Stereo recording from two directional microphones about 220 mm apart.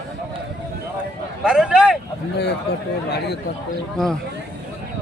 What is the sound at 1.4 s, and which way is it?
Speech, 5° right (ahead or behind).